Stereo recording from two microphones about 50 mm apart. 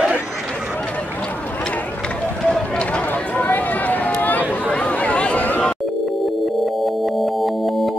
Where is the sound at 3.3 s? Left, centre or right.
Left.